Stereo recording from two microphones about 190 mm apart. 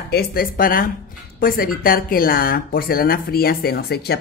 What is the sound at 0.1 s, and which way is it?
Speech, 55° left (ahead or behind).